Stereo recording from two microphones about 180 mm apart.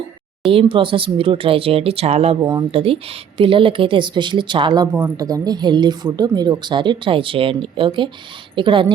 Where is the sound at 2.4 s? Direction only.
25° right (ahead or behind).